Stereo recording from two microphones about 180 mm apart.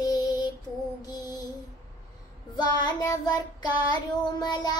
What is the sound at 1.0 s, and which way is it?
Music, 20° left (ahead or behind).